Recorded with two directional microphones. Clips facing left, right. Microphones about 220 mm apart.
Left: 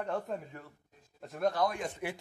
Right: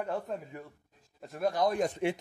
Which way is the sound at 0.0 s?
5° right (ahead or behind).